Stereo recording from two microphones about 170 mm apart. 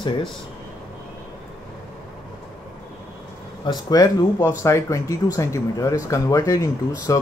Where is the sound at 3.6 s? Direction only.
20° left (ahead or behind).